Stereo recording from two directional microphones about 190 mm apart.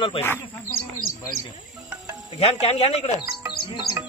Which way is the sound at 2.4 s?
35° left (ahead or behind).